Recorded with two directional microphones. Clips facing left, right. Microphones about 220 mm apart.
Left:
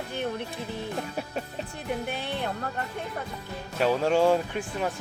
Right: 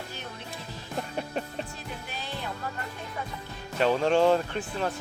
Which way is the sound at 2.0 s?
60° left (ahead or behind).